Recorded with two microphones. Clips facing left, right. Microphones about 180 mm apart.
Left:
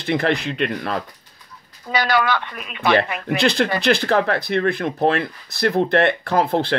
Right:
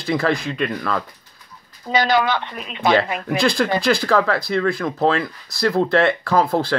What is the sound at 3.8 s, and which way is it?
Speech, 60° left (ahead or behind).